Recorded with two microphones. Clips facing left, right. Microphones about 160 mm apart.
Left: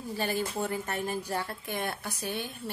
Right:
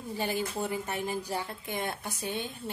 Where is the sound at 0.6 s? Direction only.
15° right (ahead or behind).